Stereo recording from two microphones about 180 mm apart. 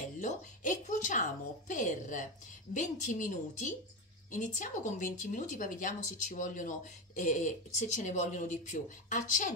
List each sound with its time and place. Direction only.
0.2 s a woman's voice: 45° left (ahead or behind)